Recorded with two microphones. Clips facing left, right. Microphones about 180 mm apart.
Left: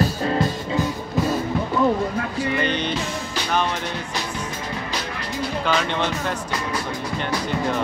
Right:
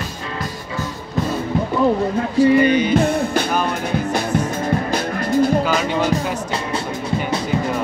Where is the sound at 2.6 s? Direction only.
10° right (ahead or behind).